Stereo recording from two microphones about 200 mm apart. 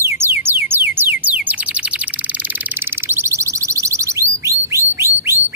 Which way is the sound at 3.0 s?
10° right (ahead or behind).